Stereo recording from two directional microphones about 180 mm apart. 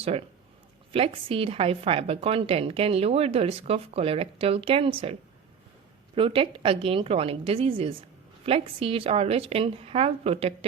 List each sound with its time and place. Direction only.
0.9 s a woman's voice: 30° right (ahead or behind)
6.1 s a woman's voice: 30° right (ahead or behind)